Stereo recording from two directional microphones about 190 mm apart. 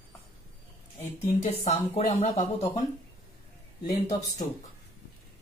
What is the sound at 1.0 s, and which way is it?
Speech, 40° left (ahead or behind).